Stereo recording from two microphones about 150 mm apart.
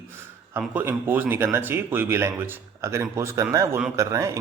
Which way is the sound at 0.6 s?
10° right (ahead or behind).